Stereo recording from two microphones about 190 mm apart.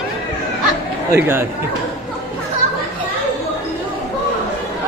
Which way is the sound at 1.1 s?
10° right (ahead or behind).